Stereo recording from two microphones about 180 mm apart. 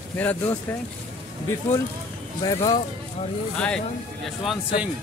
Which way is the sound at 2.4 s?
25° left (ahead or behind).